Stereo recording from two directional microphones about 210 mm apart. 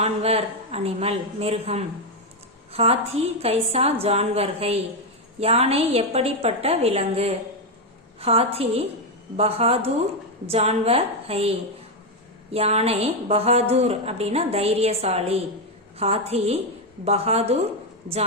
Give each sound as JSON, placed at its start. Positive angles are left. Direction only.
{"t": 0.0, "sound": "a woman's voice", "side_deg": -30}
{"t": 3.4, "sound": "a woman's voice", "side_deg": -30}